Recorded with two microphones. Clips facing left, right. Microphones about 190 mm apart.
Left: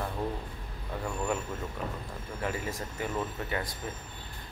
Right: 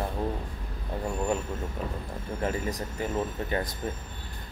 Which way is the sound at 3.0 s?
30° right (ahead or behind).